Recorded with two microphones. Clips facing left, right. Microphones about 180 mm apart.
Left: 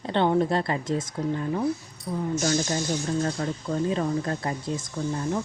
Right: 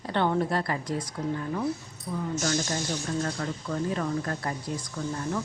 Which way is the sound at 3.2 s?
25° left (ahead or behind).